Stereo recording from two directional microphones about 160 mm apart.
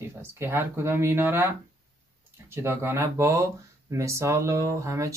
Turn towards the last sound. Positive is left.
turn(degrees=-20)  # may be behind; listen again after turning